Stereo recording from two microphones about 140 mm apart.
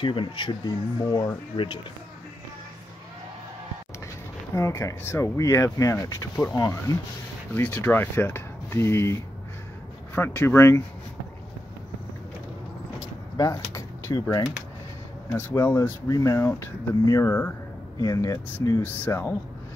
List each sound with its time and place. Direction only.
0.0 s speech: 35° left (ahead or behind)
4.6 s speech: 20° left (ahead or behind)
13.4 s speech: 25° left (ahead or behind)
15.3 s speech: 20° left (ahead or behind)
19.0 s speech: 15° left (ahead or behind)